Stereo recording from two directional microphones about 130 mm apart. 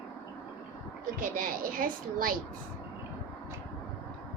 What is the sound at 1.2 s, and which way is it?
A woman's voice, 90° right.